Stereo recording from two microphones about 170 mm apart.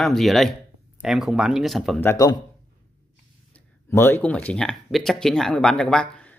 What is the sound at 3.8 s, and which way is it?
Speech, 15° left (ahead or behind).